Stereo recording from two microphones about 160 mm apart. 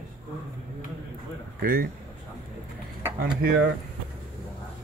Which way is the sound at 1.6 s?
65° right (ahead or behind).